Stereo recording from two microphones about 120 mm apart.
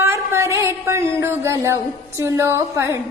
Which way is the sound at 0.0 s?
20° right (ahead or behind).